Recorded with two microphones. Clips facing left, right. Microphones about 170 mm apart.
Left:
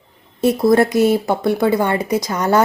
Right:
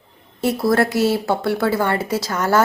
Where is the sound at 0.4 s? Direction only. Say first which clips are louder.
Left 4 dB; 20° left (ahead or behind).